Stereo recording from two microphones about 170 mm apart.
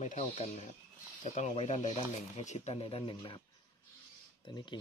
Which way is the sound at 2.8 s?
30° left (ahead or behind).